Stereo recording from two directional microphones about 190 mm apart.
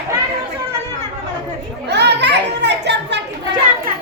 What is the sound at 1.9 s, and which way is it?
Children playing, 60° right (ahead or behind).